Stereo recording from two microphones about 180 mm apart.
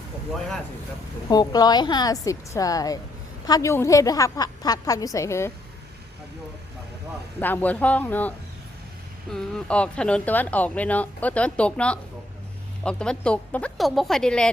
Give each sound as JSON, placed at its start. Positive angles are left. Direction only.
{"t": 1.3, "sound": "a woman's voice", "side_deg": 20}
{"t": 7.3, "sound": "speech", "side_deg": 10}
{"t": 9.3, "sound": "speech", "side_deg": 5}